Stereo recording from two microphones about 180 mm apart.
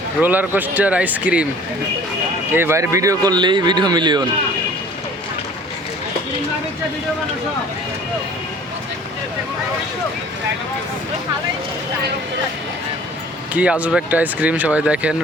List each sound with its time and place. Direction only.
0.2 s speech: 10° right (ahead or behind)
2.5 s speech: 15° right (ahead or behind)
13.5 s speech: 10° right (ahead or behind)